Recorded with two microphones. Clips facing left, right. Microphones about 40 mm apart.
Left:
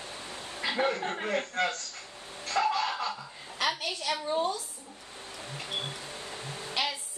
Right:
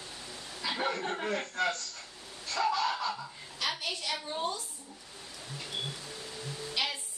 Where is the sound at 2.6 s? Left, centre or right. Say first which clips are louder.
Right 1 dB; left.